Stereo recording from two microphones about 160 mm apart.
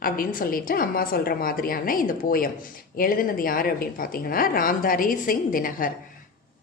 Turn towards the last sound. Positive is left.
turn(degrees=60)  # may be behind; listen again after turning